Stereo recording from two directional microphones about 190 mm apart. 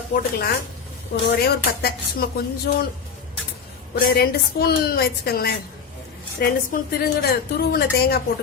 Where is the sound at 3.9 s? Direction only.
55° left (ahead or behind).